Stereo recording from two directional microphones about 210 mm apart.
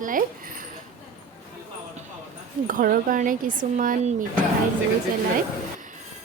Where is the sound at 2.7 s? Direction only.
40° right (ahead or behind).